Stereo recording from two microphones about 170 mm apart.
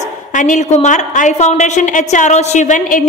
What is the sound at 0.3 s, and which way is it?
A woman's voice, 50° left (ahead or behind).